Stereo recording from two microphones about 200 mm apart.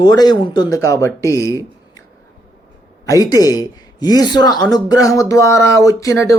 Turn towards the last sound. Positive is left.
turn(degrees=15)  # may be behind; listen again after turning